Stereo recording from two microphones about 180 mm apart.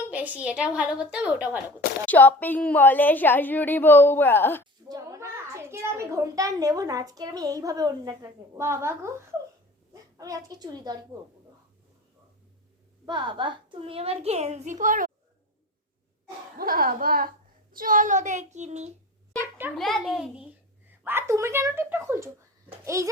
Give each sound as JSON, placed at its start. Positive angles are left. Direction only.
{"t": 0.1, "sound": "a woman's voice", "side_deg": -10}
{"t": 2.0, "sound": "a woman's voice", "side_deg": 10}
{"t": 4.9, "sound": "a child's voice", "side_deg": -15}
{"t": 13.1, "sound": "a child's voice", "side_deg": -25}
{"t": 16.6, "sound": "a woman's voice", "side_deg": -55}
{"t": 19.7, "sound": "a child's voice", "side_deg": 0}
{"t": 21.0, "sound": "a woman's voice", "side_deg": -10}